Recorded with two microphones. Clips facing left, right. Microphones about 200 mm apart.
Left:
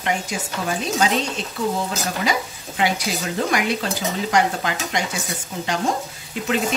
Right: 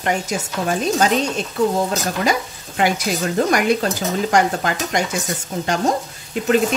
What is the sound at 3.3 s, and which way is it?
Stir, 45° right (ahead or behind).